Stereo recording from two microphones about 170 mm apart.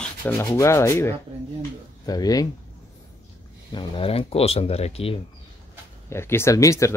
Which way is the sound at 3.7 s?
30° left (ahead or behind).